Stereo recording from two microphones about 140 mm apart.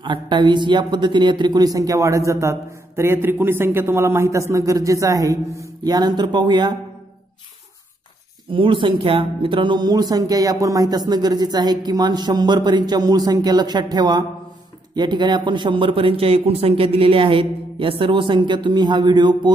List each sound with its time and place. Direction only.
0.0 s a man's voice: 35° right (ahead or behind)
8.5 s a man's voice: 35° right (ahead or behind)